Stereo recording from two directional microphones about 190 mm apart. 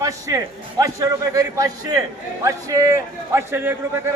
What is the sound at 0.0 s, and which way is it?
A man's voice, 15° right (ahead or behind).